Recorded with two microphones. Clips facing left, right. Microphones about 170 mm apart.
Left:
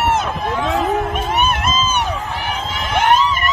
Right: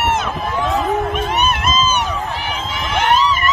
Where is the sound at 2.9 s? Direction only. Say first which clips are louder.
Left 1 dB; 50° left (ahead or behind).